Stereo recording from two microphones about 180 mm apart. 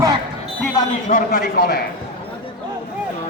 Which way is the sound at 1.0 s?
50° left (ahead or behind).